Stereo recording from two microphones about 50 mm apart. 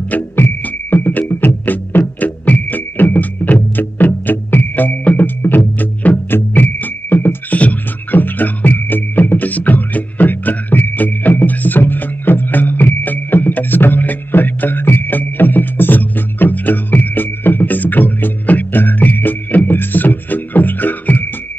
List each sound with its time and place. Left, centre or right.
0.4 s music: left